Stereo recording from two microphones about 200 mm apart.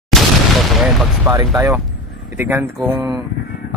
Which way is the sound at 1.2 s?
15° right (ahead or behind).